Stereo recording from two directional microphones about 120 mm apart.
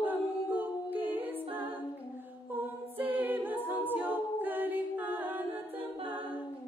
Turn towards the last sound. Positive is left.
turn(degrees=-15)  # may be behind; listen again after turning